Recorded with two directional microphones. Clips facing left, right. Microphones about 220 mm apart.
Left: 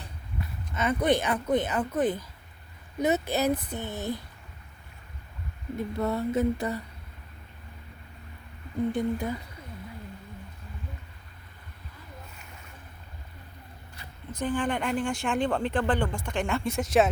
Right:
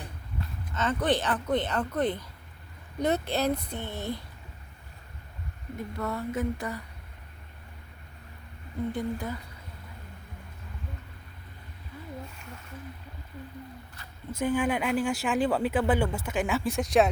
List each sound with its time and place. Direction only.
0.7 s speech: 10° left (ahead or behind)
6.0 s a sound: 25° left (ahead or behind)
8.9 s speech: 15° left (ahead or behind)
14.3 s speech: 10° right (ahead or behind)